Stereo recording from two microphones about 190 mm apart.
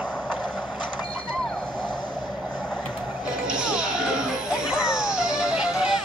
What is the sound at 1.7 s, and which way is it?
Vehicle, 25° left (ahead or behind).